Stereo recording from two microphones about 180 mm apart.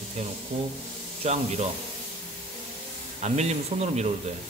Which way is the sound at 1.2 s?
40° right (ahead or behind).